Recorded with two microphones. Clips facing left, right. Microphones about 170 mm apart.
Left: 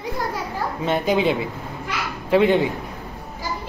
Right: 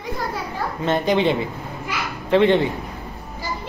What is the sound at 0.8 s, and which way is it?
A woman's voice, 10° left (ahead or behind).